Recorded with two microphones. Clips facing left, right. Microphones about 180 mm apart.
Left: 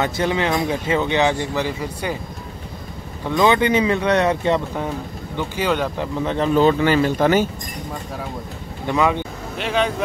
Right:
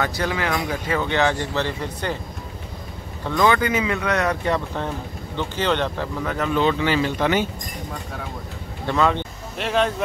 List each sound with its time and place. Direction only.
0.0 s speech: 20° left (ahead or behind)
3.3 s speech: 20° left (ahead or behind)
5.4 s speech: 10° left (ahead or behind)
6.2 s speech: 30° left (ahead or behind)
8.8 s speech: 10° left (ahead or behind)
9.6 s speech: centre (ahead or behind)